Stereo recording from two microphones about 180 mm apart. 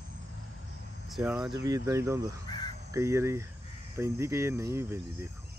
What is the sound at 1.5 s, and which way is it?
Speech, 20° right (ahead or behind).